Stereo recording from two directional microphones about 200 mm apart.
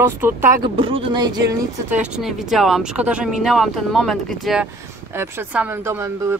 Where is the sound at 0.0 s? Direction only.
10° right (ahead or behind).